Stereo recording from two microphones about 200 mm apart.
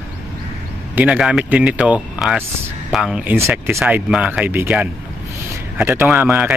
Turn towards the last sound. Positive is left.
turn(degrees=-10)  # may be behind; listen again after turning